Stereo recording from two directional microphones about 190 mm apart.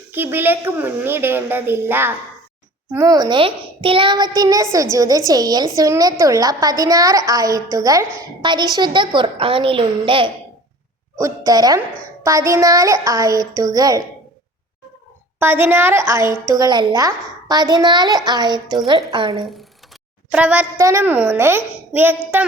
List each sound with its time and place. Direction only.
0.1 s a woman's voice: 10° right (ahead or behind)
15.4 s a woman's voice: 10° right (ahead or behind); by 19.5 s 25° right (ahead or behind)
20.3 s a woman's voice: 5° right (ahead or behind)